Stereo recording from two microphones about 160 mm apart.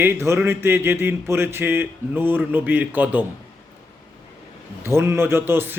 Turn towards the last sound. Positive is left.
turn(degrees=-15)  # may be behind; listen again after turning